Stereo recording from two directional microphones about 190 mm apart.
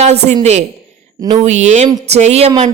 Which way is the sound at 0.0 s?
35° right (ahead or behind).